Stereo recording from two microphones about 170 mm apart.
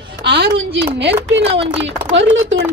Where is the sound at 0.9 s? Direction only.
90° right.